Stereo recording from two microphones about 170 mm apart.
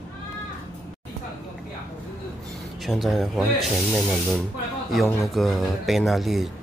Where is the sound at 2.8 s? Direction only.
Centre (ahead or behind).